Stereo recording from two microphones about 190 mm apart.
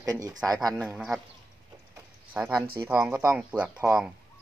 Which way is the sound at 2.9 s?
10° right (ahead or behind).